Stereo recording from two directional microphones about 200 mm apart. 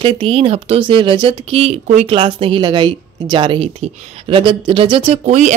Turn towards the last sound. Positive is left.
turn(degrees=-35)  # may be behind; listen again after turning